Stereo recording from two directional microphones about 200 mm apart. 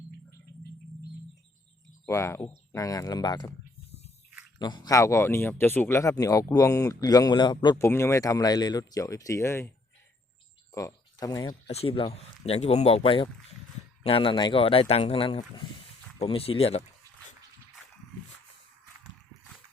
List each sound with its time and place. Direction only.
2.0 s speech: 15° left (ahead or behind)
4.6 s speech: 20° left (ahead or behind)
11.7 s speech: 30° left (ahead or behind)